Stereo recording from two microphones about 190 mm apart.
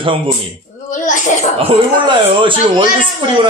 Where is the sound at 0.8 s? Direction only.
40° left (ahead or behind).